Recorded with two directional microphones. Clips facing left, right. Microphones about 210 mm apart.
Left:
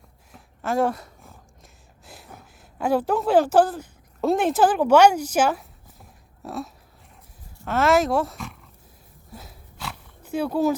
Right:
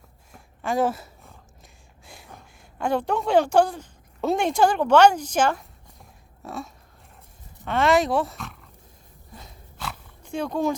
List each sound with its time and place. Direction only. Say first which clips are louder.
0.3 s a sound: left 1 dB; centre (ahead or behind)
7.6 s speech: left 1 dB; centre (ahead or behind)
9.3 s dog: left 3 dB; 5° left (ahead or behind)